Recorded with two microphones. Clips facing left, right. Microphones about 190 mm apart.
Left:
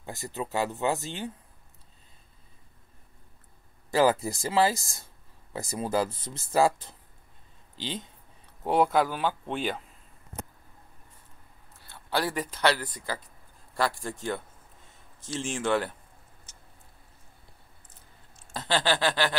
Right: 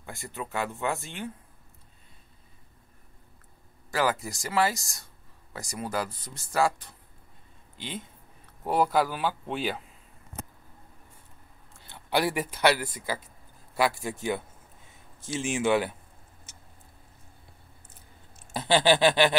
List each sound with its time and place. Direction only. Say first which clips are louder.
0.2 s speech: left 3 dB; 20° left (ahead or behind)
3.9 s speech: left 5 dB; 30° left (ahead or behind)
8.6 s speech: left 1 dB; centre (ahead or behind)
11.8 s speech: right 3 dB; 20° right (ahead or behind)
13.7 s chuckle: right 2 dB; 5° right (ahead or behind)
18.5 s chuckle: right 5 dB; 15° right (ahead or behind)